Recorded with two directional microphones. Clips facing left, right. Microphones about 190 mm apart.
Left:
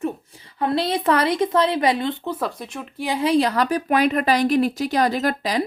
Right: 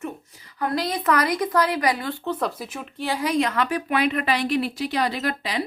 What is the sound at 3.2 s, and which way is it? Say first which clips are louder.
Speech: left 5 dB; 35° left (ahead or behind).